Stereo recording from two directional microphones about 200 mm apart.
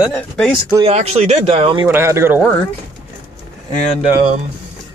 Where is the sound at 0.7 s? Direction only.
20° right (ahead or behind).